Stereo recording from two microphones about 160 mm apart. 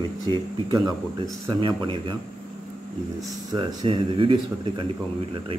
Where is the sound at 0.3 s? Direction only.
25° right (ahead or behind).